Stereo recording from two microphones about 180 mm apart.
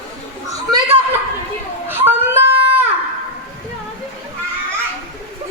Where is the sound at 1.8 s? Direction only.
10° right (ahead or behind).